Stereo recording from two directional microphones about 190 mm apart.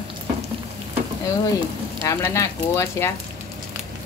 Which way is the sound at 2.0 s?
15° left (ahead or behind).